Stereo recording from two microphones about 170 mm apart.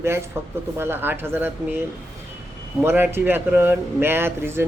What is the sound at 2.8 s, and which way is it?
A woman's voice, 15° right (ahead or behind).